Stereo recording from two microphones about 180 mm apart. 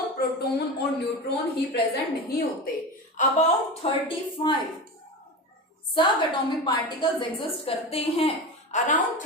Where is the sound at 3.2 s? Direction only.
35° left (ahead or behind).